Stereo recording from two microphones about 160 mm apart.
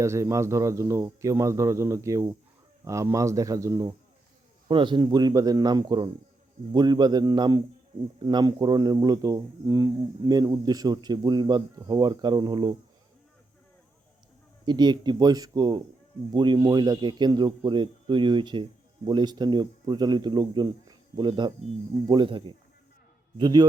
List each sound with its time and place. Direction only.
0.0 s speech: 20° right (ahead or behind)
14.6 s speech: 25° right (ahead or behind)